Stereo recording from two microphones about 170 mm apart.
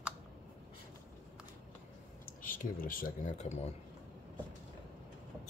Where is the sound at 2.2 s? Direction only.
55° left (ahead or behind).